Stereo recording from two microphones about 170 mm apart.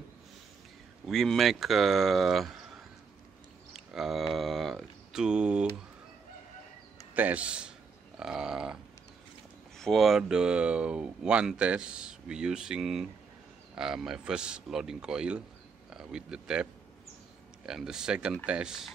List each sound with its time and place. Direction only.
1.0 s speech: centre (ahead or behind)
3.7 s mantra: centre (ahead or behind)
7.2 s speech: 10° right (ahead or behind)
9.8 s speech: centre (ahead or behind)
17.6 s speech: 5° right (ahead or behind)